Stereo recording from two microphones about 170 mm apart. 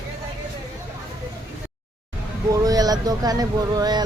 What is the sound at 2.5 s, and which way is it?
Speech, 20° right (ahead or behind).